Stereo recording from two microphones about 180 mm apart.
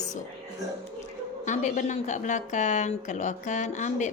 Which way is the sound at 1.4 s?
40° left (ahead or behind).